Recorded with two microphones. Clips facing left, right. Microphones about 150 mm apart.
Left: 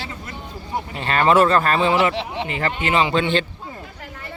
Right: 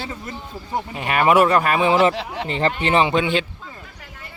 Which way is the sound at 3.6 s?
35° left (ahead or behind).